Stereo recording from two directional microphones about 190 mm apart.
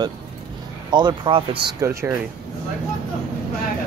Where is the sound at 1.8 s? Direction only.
15° right (ahead or behind).